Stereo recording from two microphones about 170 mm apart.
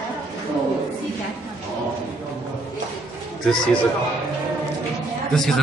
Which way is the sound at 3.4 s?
5° left (ahead or behind).